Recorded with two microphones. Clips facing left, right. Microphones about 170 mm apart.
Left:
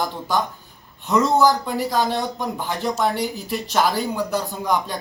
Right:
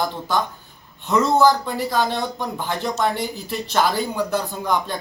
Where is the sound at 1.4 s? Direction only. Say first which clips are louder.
Right 1 dB; centre (ahead or behind).